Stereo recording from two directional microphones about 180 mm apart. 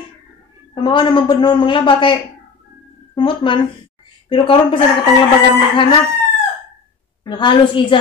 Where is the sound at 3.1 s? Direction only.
25° left (ahead or behind).